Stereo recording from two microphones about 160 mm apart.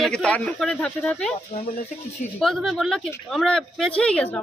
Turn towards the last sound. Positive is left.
turn(degrees=5)  # may be behind; listen again after turning